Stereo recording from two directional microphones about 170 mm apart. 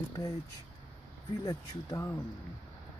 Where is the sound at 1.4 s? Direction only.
20° left (ahead or behind).